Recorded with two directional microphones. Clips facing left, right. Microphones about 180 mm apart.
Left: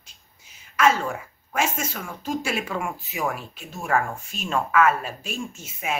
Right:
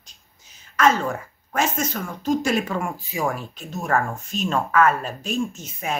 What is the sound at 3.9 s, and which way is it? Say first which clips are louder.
Speech: right 1 dB; 10° left (ahead or behind).